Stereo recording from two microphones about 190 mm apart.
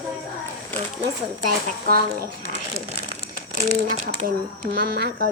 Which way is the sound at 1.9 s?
50° right (ahead or behind).